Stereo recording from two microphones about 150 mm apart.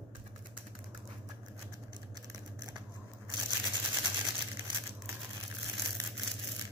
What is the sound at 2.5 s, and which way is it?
Biting, 25° right (ahead or behind).